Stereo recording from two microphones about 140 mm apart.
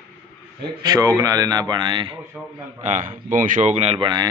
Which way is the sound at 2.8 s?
55° right (ahead or behind).